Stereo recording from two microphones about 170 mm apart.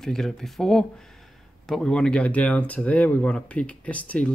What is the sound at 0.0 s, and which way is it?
Speech, centre (ahead or behind).